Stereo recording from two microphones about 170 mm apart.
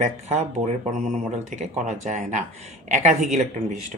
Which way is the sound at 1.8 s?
45° right (ahead or behind).